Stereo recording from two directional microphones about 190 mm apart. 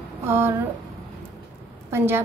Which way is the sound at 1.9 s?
15° right (ahead or behind).